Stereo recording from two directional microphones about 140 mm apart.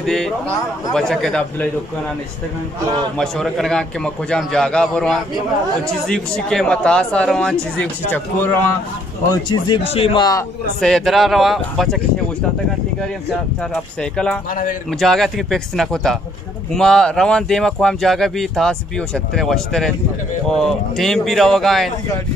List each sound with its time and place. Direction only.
0.0 s a man's voice: centre (ahead or behind)
3.2 s speech: 5° left (ahead or behind)
9.3 s speech: 30° left (ahead or behind)
9.8 s a man's voice: 45° left (ahead or behind)
10.8 s speech: centre (ahead or behind)
14.1 s speech: 5° left (ahead or behind)
14.5 s a man's voice: 75° left (ahead or behind)
14.9 s speech: centre (ahead or behind)